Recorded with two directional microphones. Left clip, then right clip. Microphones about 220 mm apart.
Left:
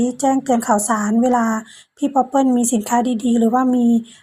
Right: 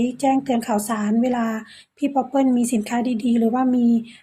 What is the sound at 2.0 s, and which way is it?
A woman's voice, 15° left (ahead or behind).